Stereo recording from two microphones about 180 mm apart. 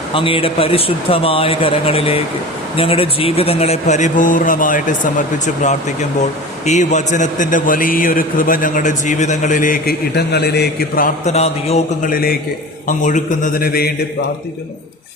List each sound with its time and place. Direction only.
0.1 s speech: 30° left (ahead or behind); by 4.9 s 50° left (ahead or behind)
6.7 s a man's voice: 40° left (ahead or behind)
11.3 s speech: 35° left (ahead or behind)
12.1 s a man's voice: 55° left (ahead or behind)
12.9 s a man's voice: 45° left (ahead or behind)